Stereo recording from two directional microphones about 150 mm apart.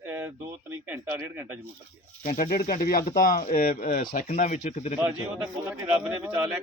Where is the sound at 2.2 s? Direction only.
70° left (ahead or behind).